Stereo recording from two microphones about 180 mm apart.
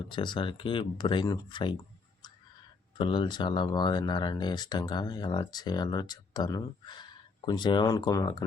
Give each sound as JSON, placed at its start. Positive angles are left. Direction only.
{"t": 0.1, "sound": "speech", "side_deg": 25}
{"t": 3.0, "sound": "speech", "side_deg": 25}